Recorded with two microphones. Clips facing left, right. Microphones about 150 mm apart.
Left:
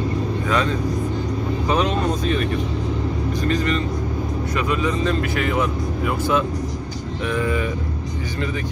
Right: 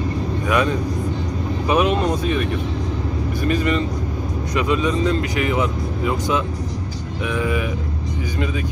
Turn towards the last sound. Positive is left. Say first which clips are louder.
# even
turn(degrees=-10)  # may be behind; listen again after turning